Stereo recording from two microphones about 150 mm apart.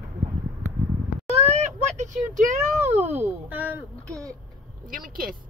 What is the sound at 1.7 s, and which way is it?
A child's voice, 50° right (ahead or behind).